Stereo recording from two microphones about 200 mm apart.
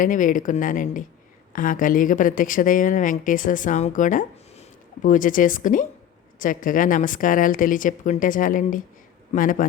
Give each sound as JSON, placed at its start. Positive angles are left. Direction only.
{"t": 0.0, "sound": "a woman's voice", "side_deg": 40}